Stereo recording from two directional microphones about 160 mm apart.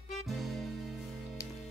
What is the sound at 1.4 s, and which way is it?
Music, 20° left (ahead or behind).